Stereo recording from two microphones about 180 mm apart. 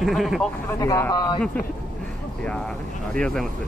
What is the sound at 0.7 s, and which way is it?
Speech, 15° left (ahead or behind).